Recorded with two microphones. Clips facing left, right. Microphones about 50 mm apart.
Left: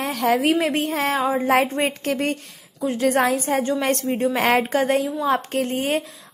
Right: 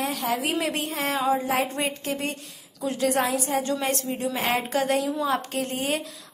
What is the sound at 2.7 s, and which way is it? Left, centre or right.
Speech, left.